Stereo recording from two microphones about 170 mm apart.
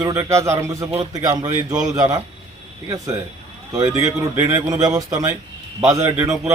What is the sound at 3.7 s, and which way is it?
A man's voice, 20° right (ahead or behind).